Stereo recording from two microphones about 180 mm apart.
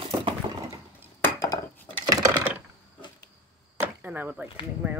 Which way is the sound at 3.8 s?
10° right (ahead or behind).